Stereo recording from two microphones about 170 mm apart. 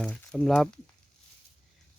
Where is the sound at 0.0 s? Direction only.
5° left (ahead or behind).